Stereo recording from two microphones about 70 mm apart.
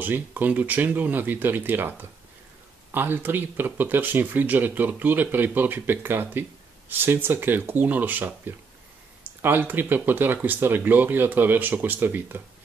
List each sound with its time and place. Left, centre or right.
0.0 s speech: right